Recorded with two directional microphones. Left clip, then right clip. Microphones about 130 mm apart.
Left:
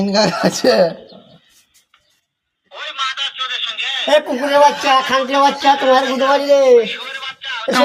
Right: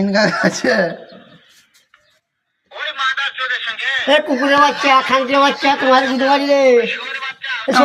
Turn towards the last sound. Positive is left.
turn(degrees=0)  # may be behind; listen again after turning